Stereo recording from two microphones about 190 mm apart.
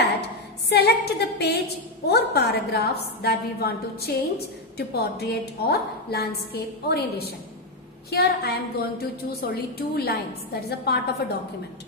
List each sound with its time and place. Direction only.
0.7 s a woman's voice: 60° left (ahead or behind)